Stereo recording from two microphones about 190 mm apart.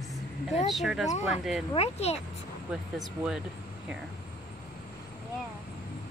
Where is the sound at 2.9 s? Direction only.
Centre (ahead or behind).